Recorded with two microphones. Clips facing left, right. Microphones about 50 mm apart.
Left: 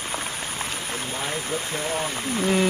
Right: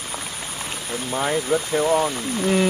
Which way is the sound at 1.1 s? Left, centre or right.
Right.